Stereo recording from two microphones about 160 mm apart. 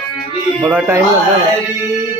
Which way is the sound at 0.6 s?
15° right (ahead or behind).